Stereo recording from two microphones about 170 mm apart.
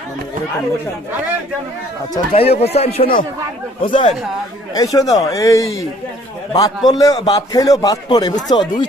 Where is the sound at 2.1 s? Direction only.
35° left (ahead or behind).